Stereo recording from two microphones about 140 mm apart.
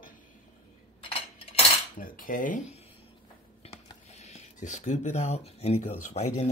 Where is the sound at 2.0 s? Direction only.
75° left (ahead or behind).